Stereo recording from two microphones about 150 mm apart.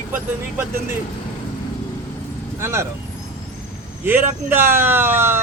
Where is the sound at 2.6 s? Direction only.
15° right (ahead or behind).